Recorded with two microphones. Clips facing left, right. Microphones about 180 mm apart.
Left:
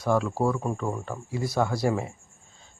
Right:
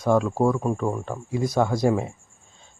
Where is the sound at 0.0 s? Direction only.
15° right (ahead or behind).